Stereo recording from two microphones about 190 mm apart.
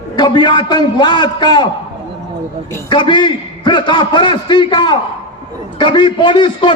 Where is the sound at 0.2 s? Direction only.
25° left (ahead or behind).